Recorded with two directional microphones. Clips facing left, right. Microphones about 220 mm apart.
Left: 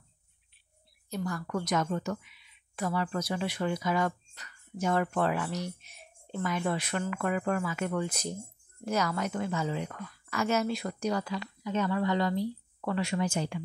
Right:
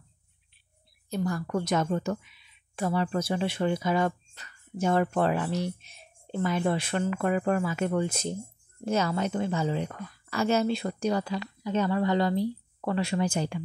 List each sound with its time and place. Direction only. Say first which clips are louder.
1.1 s a woman's voice: right 4 dB; 30° right (ahead or behind)